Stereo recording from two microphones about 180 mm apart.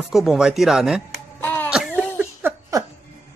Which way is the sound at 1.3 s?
10° left (ahead or behind).